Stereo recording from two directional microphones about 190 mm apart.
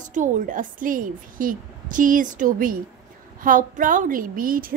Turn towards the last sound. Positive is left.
turn(degrees=-50)  # may be behind; listen again after turning